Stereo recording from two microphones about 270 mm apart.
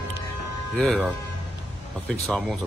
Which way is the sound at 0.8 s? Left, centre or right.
Centre.